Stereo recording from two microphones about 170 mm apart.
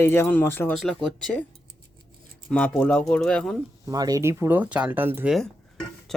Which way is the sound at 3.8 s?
20° right (ahead or behind).